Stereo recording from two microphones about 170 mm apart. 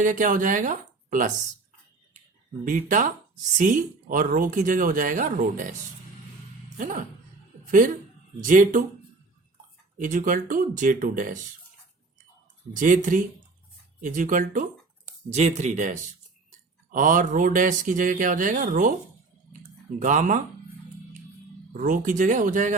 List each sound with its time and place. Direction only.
0.0 s speech: 50° right (ahead or behind)
2.6 s speech: 50° right (ahead or behind)
6.7 s speech: 50° right (ahead or behind)
8.4 s speech: 50° right (ahead or behind)
10.0 s speech: 50° right (ahead or behind)
12.7 s speech: 50° right (ahead or behind)
20.0 s speech: 50° right (ahead or behind)
21.7 s speech: 50° right (ahead or behind)